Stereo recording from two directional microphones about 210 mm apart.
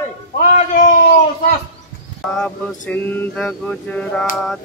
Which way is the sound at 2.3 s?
5° left (ahead or behind).